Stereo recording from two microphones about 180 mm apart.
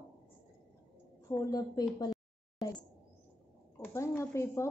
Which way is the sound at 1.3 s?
20° left (ahead or behind).